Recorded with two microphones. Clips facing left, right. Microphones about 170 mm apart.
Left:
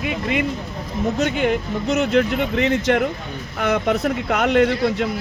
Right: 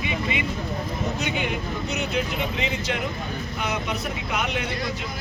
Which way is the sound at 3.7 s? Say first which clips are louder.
Left 13 dB; 55° left (ahead or behind).